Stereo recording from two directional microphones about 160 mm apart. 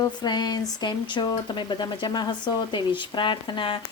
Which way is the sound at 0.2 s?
25° left (ahead or behind).